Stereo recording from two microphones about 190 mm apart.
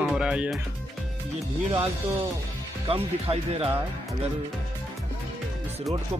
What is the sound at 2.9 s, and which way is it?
Speech, 30° right (ahead or behind).